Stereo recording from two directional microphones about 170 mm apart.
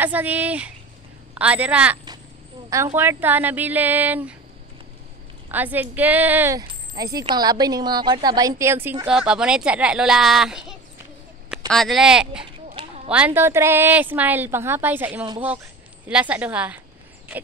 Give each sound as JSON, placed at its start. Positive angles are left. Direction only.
{"t": 0.0, "sound": "a woman's voice", "side_deg": -10}
{"t": 3.0, "sound": "a woman's voice", "side_deg": -10}
{"t": 5.5, "sound": "speech", "side_deg": -10}
{"t": 12.7, "sound": "a sound", "side_deg": -35}
{"t": 13.1, "sound": "a woman's voice", "side_deg": -10}